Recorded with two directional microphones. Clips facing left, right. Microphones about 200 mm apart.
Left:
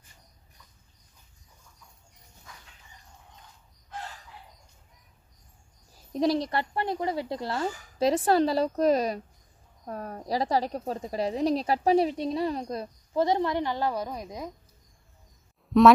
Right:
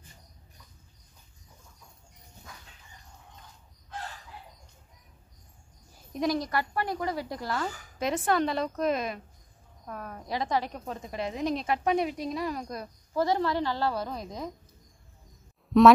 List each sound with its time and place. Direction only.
6.1 s a woman's voice: 30° left (ahead or behind); by 14.5 s 10° left (ahead or behind)
15.7 s speech: centre (ahead or behind)